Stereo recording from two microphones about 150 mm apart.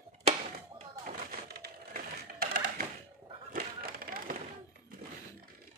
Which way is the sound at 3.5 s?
80° right.